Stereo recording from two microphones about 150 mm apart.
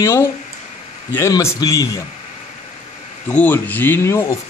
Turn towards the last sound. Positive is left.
turn(degrees=15)  # may be behind; listen again after turning